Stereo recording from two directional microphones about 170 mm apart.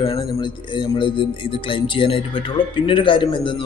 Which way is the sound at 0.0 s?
30° left (ahead or behind).